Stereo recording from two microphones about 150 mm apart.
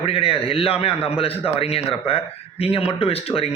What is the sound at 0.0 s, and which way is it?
A man's voice, 40° left (ahead or behind).